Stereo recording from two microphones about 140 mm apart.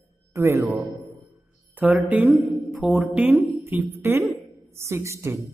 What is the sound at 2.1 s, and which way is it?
A woman's voice, 10° right (ahead or behind).